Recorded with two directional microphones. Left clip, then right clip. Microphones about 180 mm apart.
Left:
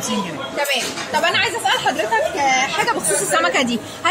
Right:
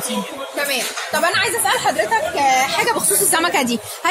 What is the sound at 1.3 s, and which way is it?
A woman's voice, 50° right (ahead or behind).